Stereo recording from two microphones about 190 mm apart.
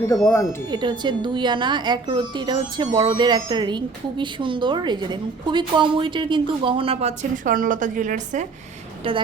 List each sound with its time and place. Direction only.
0.2 s speech: 10° left (ahead or behind)
0.7 s a woman's voice: 25° right (ahead or behind); by 8.4 s 40° right (ahead or behind)
9.0 s a woman's voice: 30° right (ahead or behind)